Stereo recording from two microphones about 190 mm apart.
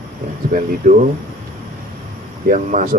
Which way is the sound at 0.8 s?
40° right (ahead or behind).